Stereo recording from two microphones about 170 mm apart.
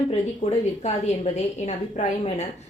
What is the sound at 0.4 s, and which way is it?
A woman's voice, 40° left (ahead or behind).